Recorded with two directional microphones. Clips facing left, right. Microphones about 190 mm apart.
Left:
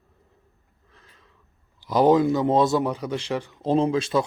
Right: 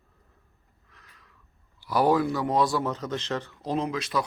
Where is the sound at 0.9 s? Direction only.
30° left (ahead or behind).